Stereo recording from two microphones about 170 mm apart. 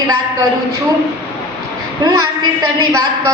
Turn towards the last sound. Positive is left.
turn(degrees=-20)  # may be behind; listen again after turning